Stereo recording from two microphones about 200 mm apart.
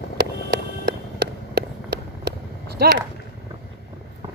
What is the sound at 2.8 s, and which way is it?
Speech, 50° right (ahead or behind).